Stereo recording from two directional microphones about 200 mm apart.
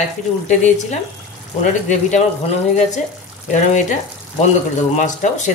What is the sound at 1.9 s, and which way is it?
Speech, 35° left (ahead or behind).